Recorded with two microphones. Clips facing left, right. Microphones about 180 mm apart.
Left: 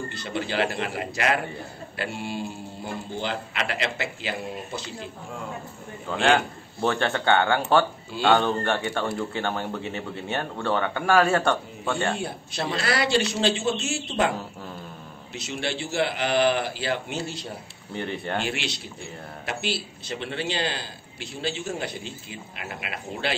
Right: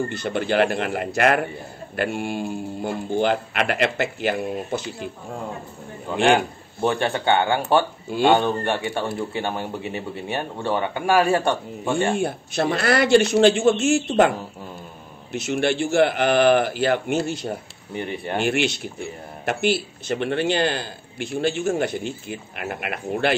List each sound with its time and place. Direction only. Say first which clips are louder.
0.2 s a man's voice: right 5 dB; 55° right (ahead or behind)
6.0 s speech: right 3 dB; 15° right (ahead or behind)
12.2 s a man's voice: right 8 dB; 50° right (ahead or behind)
15.3 s a man's voice: right 9 dB; 50° right (ahead or behind)
17.9 s speech: right 2 dB; 15° right (ahead or behind)
18.4 s a man's voice: right 8 dB; 55° right (ahead or behind)